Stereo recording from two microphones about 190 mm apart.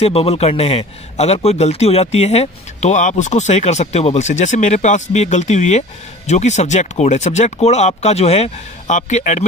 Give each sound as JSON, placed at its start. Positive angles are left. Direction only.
{"t": 0.0, "sound": "a man's voice", "side_deg": 30}